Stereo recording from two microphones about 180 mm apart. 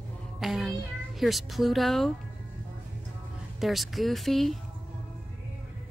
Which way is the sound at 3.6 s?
Centre (ahead or behind).